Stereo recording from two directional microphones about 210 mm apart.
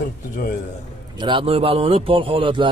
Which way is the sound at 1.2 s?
25° right (ahead or behind).